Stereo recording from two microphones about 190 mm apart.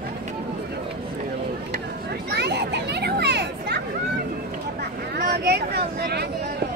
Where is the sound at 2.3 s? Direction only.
60° right (ahead or behind).